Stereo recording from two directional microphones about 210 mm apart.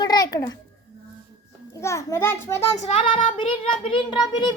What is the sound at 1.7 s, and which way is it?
A child's voice, 15° left (ahead or behind).